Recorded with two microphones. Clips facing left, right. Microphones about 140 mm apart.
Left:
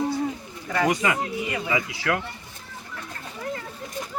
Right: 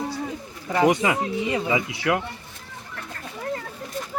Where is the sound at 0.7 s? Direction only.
25° right (ahead or behind).